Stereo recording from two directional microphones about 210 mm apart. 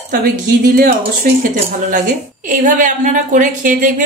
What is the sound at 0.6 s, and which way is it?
A woman's voice, 45° right (ahead or behind).